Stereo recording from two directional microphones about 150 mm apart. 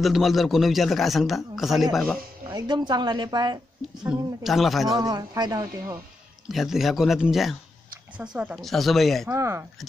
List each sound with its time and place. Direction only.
0.0 s a man's voice: centre (ahead or behind)
2.5 s speech: 30° right (ahead or behind)
3.8 s a man's voice: centre (ahead or behind)
4.8 s speech: 25° right (ahead or behind)
6.5 s a man's voice: centre (ahead or behind)
9.3 s speech: 20° right (ahead or behind)